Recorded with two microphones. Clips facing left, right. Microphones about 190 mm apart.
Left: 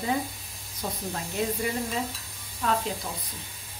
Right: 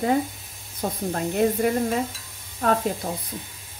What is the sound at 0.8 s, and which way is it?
Speech, 55° right (ahead or behind).